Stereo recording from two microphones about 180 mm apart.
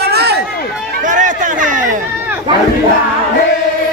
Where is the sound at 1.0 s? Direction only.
45° right (ahead or behind).